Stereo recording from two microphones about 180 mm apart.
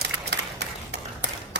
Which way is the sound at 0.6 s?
75° right (ahead or behind).